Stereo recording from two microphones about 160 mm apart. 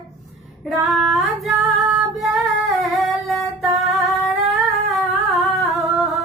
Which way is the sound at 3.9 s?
Centre (ahead or behind).